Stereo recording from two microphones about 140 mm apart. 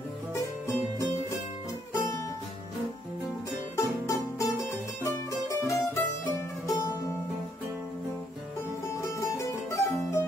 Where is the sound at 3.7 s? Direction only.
20° left (ahead or behind).